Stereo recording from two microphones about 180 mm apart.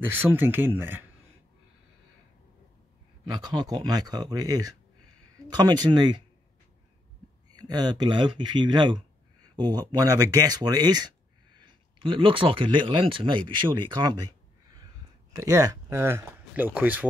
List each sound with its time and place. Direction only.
0.1 s speech: 10° right (ahead or behind)
3.3 s speech: 25° right (ahead or behind)
7.6 s speech: 20° right (ahead or behind)
15.3 s speech: 15° right (ahead or behind)